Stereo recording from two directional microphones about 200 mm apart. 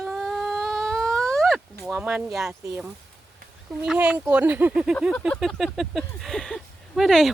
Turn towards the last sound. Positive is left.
turn(degrees=0)  # may be behind; listen again after turning